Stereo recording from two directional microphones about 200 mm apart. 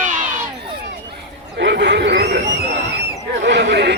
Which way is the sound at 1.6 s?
60° right (ahead or behind).